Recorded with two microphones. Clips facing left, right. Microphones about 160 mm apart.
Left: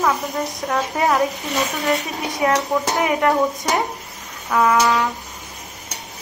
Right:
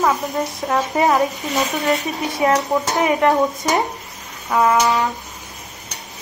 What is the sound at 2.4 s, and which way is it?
Speech, centre (ahead or behind).